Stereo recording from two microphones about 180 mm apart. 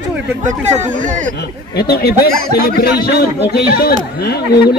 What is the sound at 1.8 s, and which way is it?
Speech, 60° left (ahead or behind).